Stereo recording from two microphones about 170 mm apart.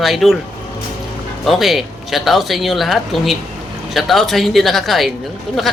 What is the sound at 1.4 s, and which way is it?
Speech, centre (ahead or behind).